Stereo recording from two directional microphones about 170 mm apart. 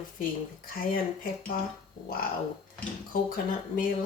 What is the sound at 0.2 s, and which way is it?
Speech, 55° left (ahead or behind).